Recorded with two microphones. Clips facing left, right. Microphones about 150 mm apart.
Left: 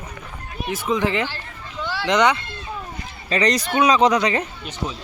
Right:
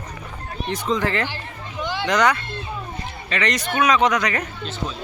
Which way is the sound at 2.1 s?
20° left (ahead or behind).